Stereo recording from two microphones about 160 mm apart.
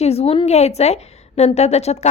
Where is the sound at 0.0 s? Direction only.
40° left (ahead or behind).